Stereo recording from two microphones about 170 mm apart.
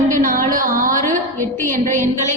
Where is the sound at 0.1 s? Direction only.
55° right (ahead or behind).